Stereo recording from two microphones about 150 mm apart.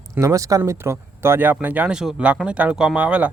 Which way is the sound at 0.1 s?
20° right (ahead or behind).